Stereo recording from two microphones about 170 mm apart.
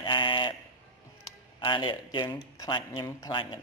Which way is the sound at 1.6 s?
30° left (ahead or behind).